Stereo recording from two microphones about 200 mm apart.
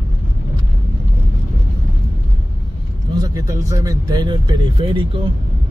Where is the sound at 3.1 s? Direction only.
20° right (ahead or behind).